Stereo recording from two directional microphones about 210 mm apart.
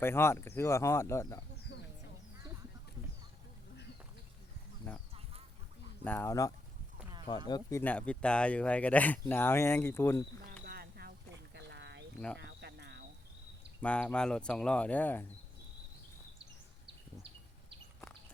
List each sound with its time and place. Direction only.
0.0 s speech: 10° left (ahead or behind)
4.8 s speech: 10° left (ahead or behind)
6.1 s speech: 10° left (ahead or behind)
10.7 s a sound: 45° right (ahead or behind)
12.4 s cricket: 55° right (ahead or behind)
13.8 s speech: 5° left (ahead or behind)